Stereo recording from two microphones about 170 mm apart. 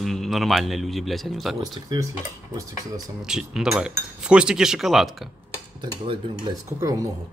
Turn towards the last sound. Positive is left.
turn(degrees=-20)  # may be behind; listen again after turning